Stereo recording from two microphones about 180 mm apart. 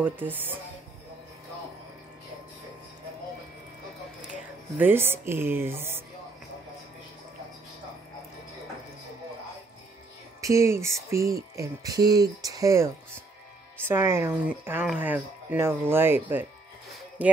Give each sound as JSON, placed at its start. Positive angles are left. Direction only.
{"t": 0.0, "sound": "speech", "side_deg": -10}
{"t": 4.3, "sound": "speech", "side_deg": -10}
{"t": 10.4, "sound": "speech", "side_deg": -15}